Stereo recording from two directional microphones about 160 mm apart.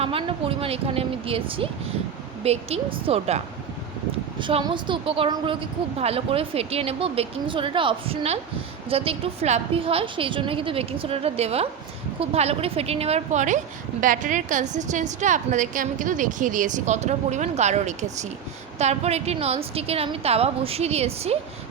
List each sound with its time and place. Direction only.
0.0 s a woman's voice: 35° right (ahead or behind)
4.4 s a woman's voice: 30° right (ahead or behind)